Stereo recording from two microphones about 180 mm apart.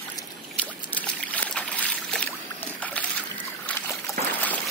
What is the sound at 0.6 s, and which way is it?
Boat, 10° left (ahead or behind).